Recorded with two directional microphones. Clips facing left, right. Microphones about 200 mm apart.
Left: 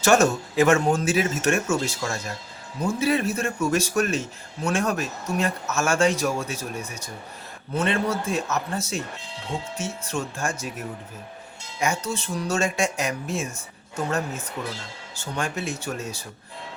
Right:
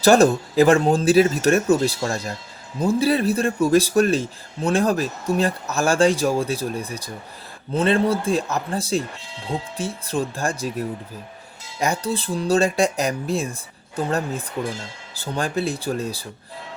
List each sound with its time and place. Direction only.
0.0 s speech: 35° right (ahead or behind)